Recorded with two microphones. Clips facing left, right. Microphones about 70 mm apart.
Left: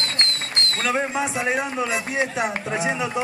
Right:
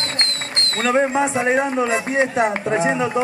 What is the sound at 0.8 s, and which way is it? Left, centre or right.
A man's voice, right.